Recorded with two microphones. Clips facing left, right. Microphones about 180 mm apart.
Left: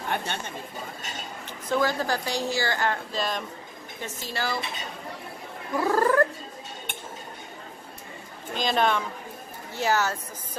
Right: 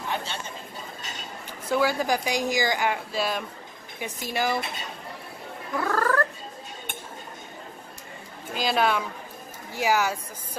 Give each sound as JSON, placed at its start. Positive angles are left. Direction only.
{"t": 0.1, "sound": "speech", "side_deg": 60}
{"t": 1.7, "sound": "a woman's voice", "side_deg": -10}
{"t": 5.8, "sound": "cat", "side_deg": 15}
{"t": 8.5, "sound": "a woman's voice", "side_deg": -5}